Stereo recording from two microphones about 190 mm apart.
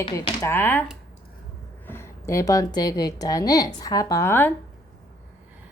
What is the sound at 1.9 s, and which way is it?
A woman's voice, 15° left (ahead or behind).